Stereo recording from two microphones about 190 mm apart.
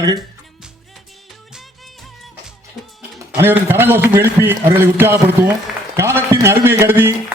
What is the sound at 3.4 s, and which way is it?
A man's voice, 10° right (ahead or behind).